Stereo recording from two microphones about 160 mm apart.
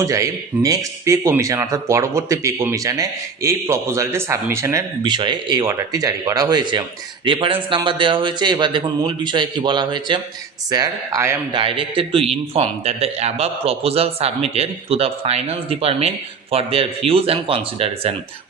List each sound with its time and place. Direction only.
0.0 s speech: 20° right (ahead or behind)
11.5 s speech: 35° right (ahead or behind)